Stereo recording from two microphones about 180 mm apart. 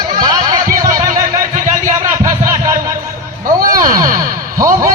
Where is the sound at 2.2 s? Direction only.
20° right (ahead or behind).